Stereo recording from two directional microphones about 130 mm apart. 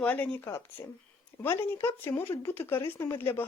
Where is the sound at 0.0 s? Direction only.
10° left (ahead or behind).